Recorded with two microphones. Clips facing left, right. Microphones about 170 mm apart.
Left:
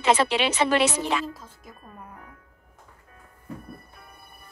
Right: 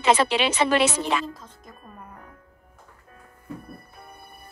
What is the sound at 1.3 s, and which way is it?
Speech, 5° left (ahead or behind).